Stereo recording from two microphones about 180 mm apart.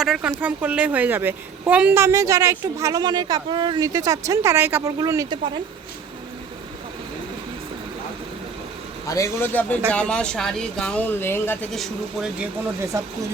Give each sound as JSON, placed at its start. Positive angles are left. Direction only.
{"t": 0.0, "sound": "a woman's voice", "side_deg": -5}
{"t": 9.0, "sound": "speech", "side_deg": 15}
{"t": 11.7, "sound": "speech", "side_deg": 0}
{"t": 12.9, "sound": "speech", "side_deg": -20}